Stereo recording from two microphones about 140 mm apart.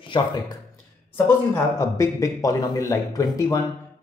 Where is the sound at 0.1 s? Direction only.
35° left (ahead or behind).